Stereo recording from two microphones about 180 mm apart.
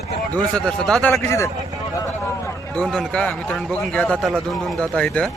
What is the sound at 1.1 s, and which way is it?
Speech, 15° left (ahead or behind).